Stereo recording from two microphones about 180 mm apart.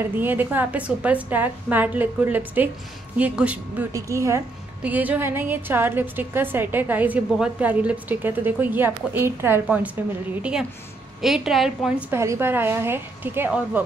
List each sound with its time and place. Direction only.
0.0 s a woman's voice: 10° right (ahead or behind)
12.1 s a woman's voice: 15° right (ahead or behind)